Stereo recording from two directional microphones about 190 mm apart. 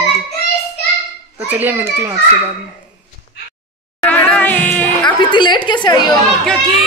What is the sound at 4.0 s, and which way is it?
Music, 10° left (ahead or behind).